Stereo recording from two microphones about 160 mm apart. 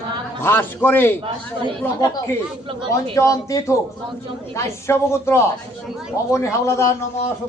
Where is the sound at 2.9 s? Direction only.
20° left (ahead or behind).